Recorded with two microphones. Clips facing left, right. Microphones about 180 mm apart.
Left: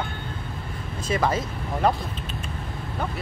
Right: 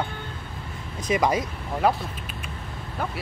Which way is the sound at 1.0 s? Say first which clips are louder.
Right 2 dB; 15° right (ahead or behind).